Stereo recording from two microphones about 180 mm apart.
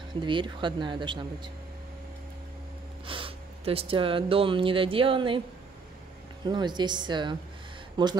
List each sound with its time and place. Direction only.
0.1 s speech: 25° right (ahead or behind)
3.1 s speech: 30° right (ahead or behind)
6.4 s speech: 25° right (ahead or behind)